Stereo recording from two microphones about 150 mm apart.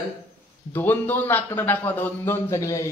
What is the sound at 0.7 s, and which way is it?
Speech, 10° left (ahead or behind).